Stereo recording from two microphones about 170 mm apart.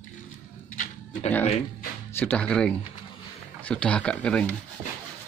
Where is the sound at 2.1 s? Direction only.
10° left (ahead or behind).